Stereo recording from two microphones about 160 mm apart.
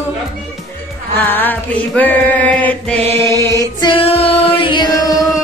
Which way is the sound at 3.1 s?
20° left (ahead or behind).